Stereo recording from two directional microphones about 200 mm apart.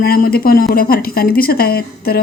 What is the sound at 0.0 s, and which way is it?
Speech, 50° left (ahead or behind).